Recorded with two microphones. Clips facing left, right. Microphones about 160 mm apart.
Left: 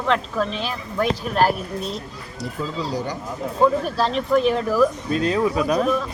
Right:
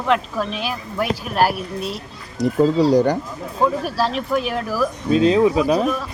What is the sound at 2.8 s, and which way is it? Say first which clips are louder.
Speech: right 11 dB; 70° right (ahead or behind).